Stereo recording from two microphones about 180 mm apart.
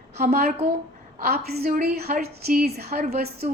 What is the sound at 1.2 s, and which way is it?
A woman's voice, 60° right (ahead or behind).